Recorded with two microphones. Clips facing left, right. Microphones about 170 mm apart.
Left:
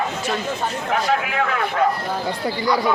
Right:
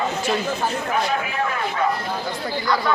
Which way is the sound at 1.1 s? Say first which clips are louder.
Left 3 dB; 75° left (ahead or behind).